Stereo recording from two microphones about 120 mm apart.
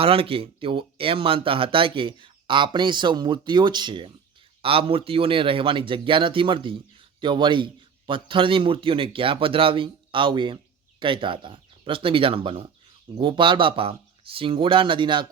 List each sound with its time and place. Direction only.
0.0 s a man's voice: 50° right (ahead or behind)